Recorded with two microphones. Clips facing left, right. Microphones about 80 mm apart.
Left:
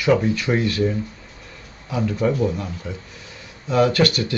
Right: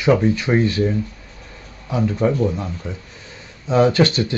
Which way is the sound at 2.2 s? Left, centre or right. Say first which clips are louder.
Right 1 dB; centre.